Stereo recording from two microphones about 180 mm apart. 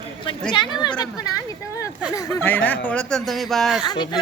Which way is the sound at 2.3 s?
10° left (ahead or behind).